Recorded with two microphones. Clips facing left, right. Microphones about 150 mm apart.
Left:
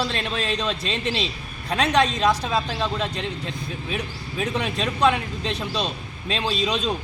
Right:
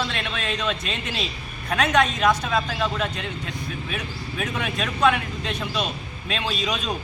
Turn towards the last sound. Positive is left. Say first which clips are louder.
# left 3 dB
turn(degrees=30)  # may be behind; listen again after turning